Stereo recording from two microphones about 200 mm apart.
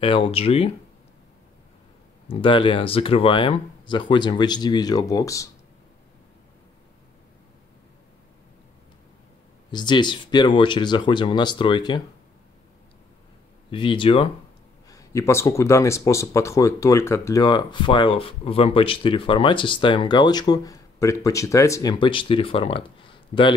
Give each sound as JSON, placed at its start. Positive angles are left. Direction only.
{"t": 0.0, "sound": "speech", "side_deg": 25}
{"t": 2.2, "sound": "speech", "side_deg": 25}
{"t": 9.7, "sound": "speech", "side_deg": 20}
{"t": 13.7, "sound": "speech", "side_deg": 25}
{"t": 14.9, "sound": "speech", "side_deg": 15}